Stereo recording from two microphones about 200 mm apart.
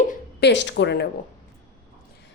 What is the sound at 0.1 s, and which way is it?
Speech, 55° left (ahead or behind).